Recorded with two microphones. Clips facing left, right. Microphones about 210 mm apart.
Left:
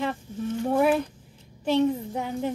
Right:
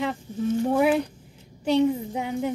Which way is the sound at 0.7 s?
15° right (ahead or behind).